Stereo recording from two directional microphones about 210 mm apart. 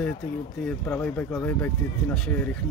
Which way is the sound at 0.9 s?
10° left (ahead or behind).